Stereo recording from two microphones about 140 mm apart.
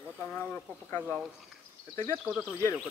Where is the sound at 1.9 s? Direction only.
20° left (ahead or behind).